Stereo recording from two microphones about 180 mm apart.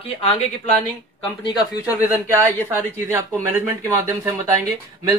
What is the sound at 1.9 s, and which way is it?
Speech, 10° right (ahead or behind).